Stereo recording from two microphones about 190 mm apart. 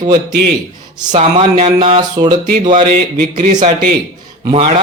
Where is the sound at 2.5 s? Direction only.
40° right (ahead or behind).